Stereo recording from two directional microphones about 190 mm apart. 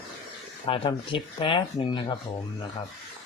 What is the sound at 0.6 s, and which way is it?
Speech, 25° left (ahead or behind).